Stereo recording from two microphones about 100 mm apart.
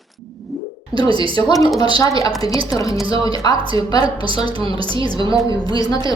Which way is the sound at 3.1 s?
60° right (ahead or behind).